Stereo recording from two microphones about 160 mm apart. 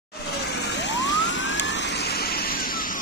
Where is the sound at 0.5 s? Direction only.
90° left.